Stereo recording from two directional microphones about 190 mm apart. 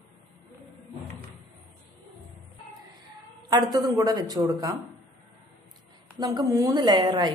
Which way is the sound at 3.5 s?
20° right (ahead or behind).